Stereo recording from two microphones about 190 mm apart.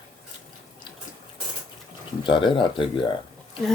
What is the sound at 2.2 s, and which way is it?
Speech, 25° left (ahead or behind).